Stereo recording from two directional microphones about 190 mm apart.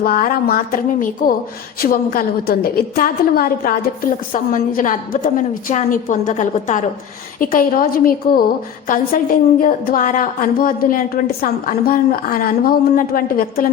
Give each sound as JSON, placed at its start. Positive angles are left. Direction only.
{"t": 0.0, "sound": "a woman's voice", "side_deg": 50}